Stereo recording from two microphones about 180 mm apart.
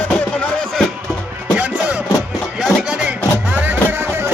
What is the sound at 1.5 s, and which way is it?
Music, 10° right (ahead or behind).